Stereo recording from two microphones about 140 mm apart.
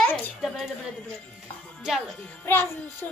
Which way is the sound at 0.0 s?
5° left (ahead or behind).